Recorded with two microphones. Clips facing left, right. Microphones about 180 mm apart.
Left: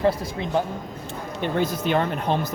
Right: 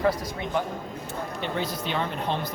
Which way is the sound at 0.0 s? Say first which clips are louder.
Left 3 dB; 30° left (ahead or behind).